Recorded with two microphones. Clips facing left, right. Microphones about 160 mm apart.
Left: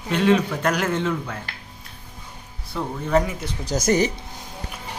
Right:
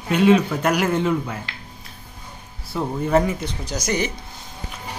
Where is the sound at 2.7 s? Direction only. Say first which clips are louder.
Right 2 dB; 5° right (ahead or behind).